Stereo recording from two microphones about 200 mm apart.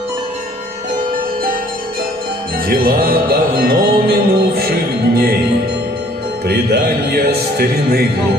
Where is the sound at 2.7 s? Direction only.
50° right (ahead or behind).